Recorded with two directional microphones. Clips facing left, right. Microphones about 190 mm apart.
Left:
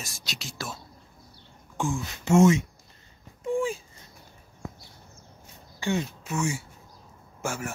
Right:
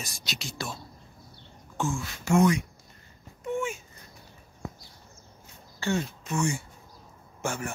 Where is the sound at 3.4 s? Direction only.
30° left (ahead or behind).